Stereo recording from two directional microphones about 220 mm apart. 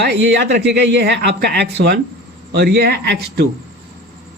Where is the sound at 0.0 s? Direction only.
50° right (ahead or behind).